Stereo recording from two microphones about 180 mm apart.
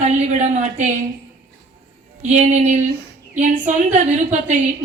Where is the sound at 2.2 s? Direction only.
40° right (ahead or behind).